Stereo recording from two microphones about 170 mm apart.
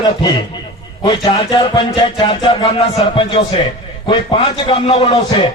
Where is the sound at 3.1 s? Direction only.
30° left (ahead or behind).